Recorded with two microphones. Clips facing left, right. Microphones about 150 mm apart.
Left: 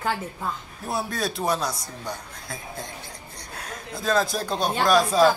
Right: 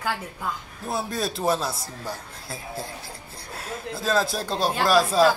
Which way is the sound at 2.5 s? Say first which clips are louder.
Right 2 dB; 30° right (ahead or behind).